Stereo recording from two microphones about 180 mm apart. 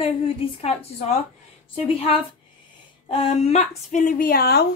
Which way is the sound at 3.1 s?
40° left (ahead or behind).